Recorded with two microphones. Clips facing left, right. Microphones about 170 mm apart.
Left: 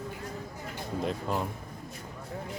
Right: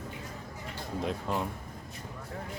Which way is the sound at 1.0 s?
Centre (ahead or behind).